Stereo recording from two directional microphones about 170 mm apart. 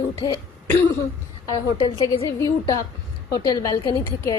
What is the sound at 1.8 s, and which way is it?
A woman's voice, 20° left (ahead or behind).